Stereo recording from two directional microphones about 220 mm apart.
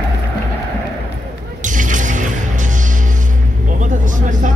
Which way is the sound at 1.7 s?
35° right (ahead or behind).